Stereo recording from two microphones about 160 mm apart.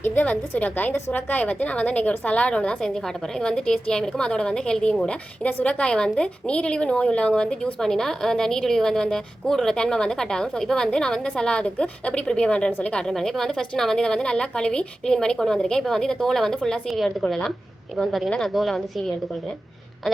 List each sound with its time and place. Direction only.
0.0 s a woman's voice: 10° left (ahead or behind)